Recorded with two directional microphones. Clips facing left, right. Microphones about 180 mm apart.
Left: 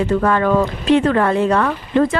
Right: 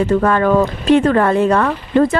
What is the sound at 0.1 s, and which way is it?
Speech, 50° right (ahead or behind).